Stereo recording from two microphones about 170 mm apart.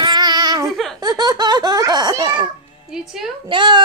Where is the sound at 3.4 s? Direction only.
25° right (ahead or behind).